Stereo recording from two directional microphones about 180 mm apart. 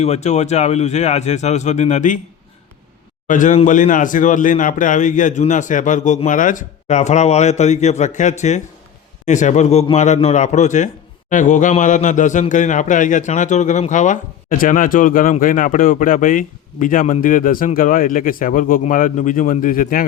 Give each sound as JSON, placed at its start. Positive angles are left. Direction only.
{"t": 0.0, "sound": "speech", "side_deg": 35}
{"t": 3.2, "sound": "speech", "side_deg": 45}